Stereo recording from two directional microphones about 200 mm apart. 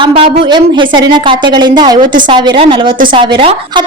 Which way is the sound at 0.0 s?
30° right (ahead or behind).